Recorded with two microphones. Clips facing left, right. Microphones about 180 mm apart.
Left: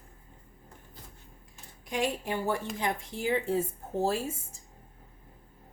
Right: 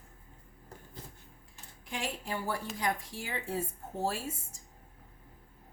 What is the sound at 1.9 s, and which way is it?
Speech, 20° left (ahead or behind).